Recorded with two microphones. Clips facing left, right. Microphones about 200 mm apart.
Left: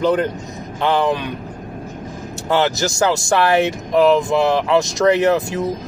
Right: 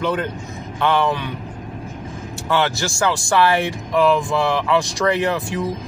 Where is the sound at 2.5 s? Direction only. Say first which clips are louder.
Left 3 dB; 40° left (ahead or behind).